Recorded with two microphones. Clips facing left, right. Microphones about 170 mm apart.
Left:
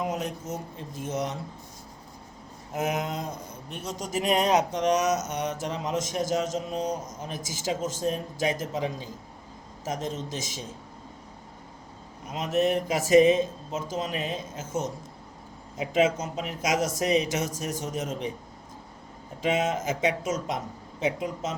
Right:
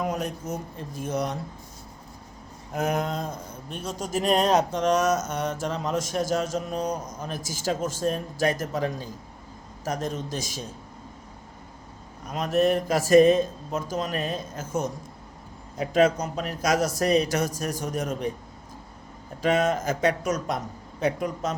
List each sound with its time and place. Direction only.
0.0 s a sound: 20° left (ahead or behind)
0.4 s speech: 20° left (ahead or behind)
2.7 s speech: 20° left (ahead or behind)
12.5 s speech: 20° left (ahead or behind)
15.8 s speech: 20° left (ahead or behind)
19.5 s speech: 20° left (ahead or behind)